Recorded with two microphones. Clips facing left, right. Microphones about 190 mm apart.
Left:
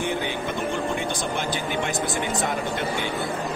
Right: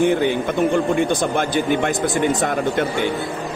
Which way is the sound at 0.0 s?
55° right (ahead or behind).